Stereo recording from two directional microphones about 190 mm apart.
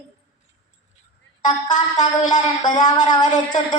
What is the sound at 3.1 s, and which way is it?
Speech, 20° left (ahead or behind).